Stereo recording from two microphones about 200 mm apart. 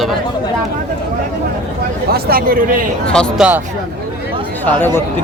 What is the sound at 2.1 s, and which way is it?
Speech, 45° right (ahead or behind).